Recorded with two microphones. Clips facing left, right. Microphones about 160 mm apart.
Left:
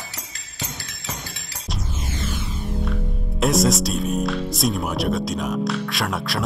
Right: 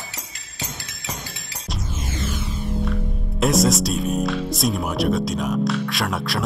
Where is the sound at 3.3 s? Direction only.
Centre (ahead or behind).